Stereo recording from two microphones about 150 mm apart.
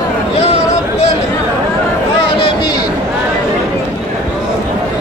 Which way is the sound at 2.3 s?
30° left (ahead or behind).